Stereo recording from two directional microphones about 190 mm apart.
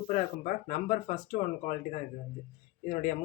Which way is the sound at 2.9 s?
45° left (ahead or behind).